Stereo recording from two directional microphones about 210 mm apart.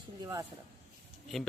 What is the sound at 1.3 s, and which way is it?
Speech, centre (ahead or behind).